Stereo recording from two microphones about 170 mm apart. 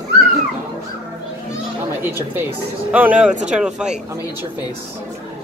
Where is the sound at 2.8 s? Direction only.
10° right (ahead or behind).